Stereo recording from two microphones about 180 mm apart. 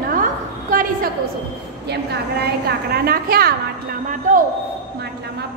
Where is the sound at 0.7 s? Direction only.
50° right (ahead or behind).